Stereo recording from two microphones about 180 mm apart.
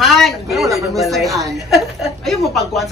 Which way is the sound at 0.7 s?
Centre (ahead or behind).